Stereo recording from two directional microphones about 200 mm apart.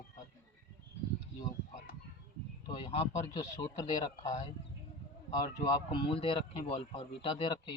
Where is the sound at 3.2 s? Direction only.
20° left (ahead or behind).